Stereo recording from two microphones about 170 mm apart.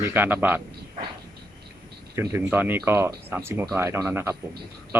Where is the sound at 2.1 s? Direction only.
15° right (ahead or behind).